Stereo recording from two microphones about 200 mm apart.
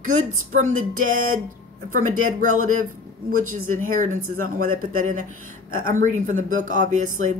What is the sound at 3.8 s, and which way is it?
Speech, 40° right (ahead or behind).